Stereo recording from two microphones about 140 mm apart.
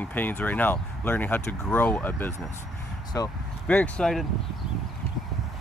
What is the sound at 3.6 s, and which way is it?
Speech, 10° left (ahead or behind).